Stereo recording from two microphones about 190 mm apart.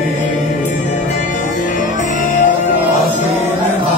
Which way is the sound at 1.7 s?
45° left (ahead or behind).